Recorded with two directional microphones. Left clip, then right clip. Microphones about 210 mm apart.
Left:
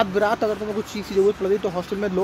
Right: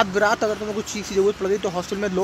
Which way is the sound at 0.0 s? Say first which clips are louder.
Right 1 dB; centre (ahead or behind).